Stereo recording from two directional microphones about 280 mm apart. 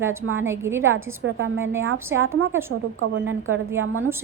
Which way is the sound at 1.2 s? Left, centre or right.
Right.